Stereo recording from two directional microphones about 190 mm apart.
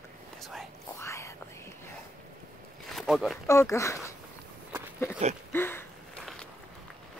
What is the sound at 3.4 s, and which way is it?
Speech, 15° left (ahead or behind).